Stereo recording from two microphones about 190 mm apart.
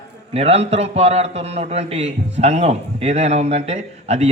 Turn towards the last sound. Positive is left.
turn(degrees=-35)  # may be behind; listen again after turning